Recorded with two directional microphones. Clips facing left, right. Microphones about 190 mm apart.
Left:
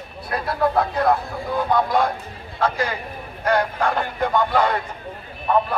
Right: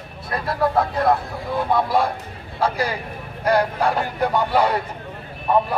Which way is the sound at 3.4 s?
10° right (ahead or behind).